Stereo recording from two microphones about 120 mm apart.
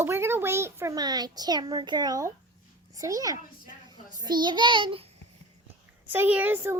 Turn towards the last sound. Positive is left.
turn(degrees=-20)  # may be behind; listen again after turning